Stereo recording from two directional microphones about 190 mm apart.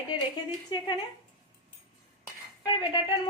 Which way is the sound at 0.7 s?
20° left (ahead or behind).